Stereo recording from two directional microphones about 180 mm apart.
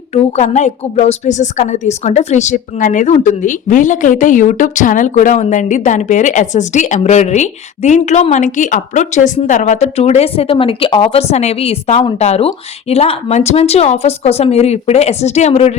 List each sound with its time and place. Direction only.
0.1 s a woman's voice: 40° left (ahead or behind)